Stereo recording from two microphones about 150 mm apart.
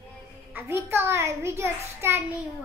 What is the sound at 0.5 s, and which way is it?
A child's voice, 15° right (ahead or behind).